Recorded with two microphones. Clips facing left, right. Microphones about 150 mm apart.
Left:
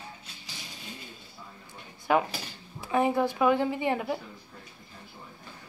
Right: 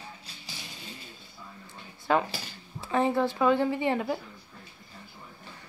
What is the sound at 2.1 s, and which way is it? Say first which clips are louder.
Speech: left 1 dB; 10° left (ahead or behind).